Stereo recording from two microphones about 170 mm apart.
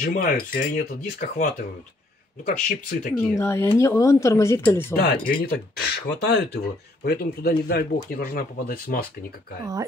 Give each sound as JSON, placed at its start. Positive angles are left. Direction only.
{"t": 0.0, "sound": "speech", "side_deg": 45}
{"t": 3.2, "sound": "a woman's voice", "side_deg": 15}
{"t": 4.9, "sound": "speech", "side_deg": 65}